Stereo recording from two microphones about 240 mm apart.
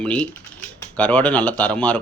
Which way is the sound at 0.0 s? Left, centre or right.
Centre.